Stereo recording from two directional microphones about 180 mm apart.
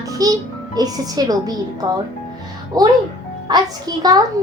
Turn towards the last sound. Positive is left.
turn(degrees=-20)  # may be behind; listen again after turning